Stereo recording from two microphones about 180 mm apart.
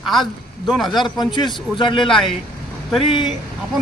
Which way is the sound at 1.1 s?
25° left (ahead or behind).